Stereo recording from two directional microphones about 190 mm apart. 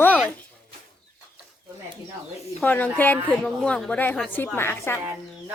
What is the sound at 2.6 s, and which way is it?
A woman's voice, 10° left (ahead or behind).